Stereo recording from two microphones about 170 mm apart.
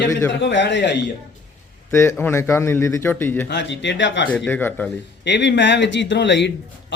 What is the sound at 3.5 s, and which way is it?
Speech, 90° left.